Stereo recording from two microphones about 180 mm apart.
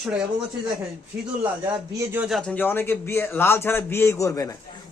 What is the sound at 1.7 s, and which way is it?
A man's voice, 10° right (ahead or behind).